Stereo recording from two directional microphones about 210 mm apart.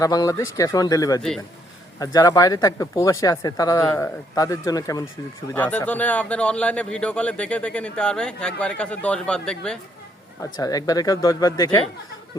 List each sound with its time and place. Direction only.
0.0 s speech: 15° left (ahead or behind)
10.6 s speech: 15° left (ahead or behind)